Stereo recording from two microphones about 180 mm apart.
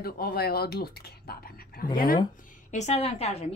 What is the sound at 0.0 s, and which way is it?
Speech, 60° left (ahead or behind).